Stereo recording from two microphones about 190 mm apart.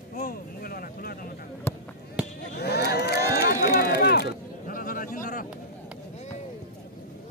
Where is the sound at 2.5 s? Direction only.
60° left (ahead or behind).